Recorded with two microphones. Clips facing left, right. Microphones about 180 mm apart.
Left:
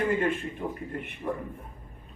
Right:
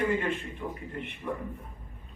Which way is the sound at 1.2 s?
50° left (ahead or behind).